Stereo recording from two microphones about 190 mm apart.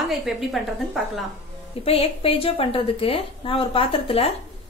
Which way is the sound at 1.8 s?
30° left (ahead or behind).